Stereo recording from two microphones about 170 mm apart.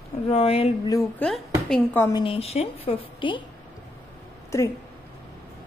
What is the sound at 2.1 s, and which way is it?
A woman's voice, 30° left (ahead or behind).